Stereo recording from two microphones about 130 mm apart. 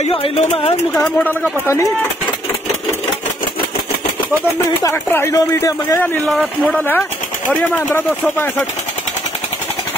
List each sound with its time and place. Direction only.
0.0 s speech: 45° left (ahead or behind)
1.0 s speech: 10° left (ahead or behind)
4.8 s speech: 25° left (ahead or behind)
6.1 s speech: 10° left (ahead or behind)